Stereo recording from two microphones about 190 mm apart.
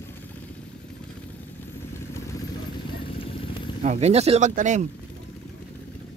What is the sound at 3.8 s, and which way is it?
Speech, 35° right (ahead or behind).